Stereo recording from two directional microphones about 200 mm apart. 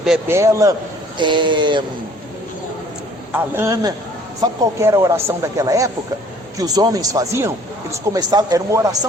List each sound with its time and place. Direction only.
0.0 s a man's voice: 5° right (ahead or behind)
0.3 s speech: 15° right (ahead or behind)
3.3 s speech: 10° right (ahead or behind)